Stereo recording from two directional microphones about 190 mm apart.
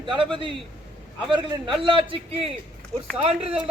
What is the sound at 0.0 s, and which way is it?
A man's voice, 25° right (ahead or behind).